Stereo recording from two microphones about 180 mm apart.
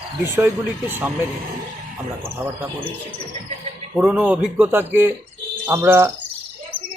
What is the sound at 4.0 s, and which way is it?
Speech, 5° right (ahead or behind).